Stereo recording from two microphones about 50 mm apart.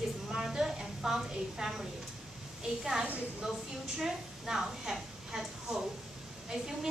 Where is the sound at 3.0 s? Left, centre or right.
Right.